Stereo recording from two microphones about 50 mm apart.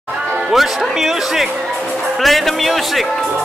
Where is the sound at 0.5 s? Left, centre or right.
Centre.